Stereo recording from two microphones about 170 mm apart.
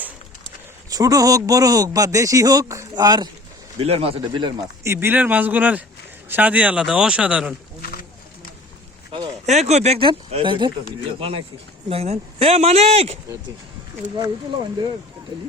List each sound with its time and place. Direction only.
0.9 s speech: 20° right (ahead or behind)
3.8 s speech: 35° right (ahead or behind)
4.9 s speech: 10° right (ahead or behind)
7.8 s a sound: 60° left (ahead or behind)
9.5 s speech: 40° right (ahead or behind)